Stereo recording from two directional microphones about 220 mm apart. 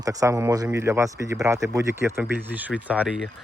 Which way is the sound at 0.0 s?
15° right (ahead or behind).